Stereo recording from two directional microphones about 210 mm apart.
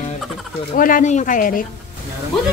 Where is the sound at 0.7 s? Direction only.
40° left (ahead or behind).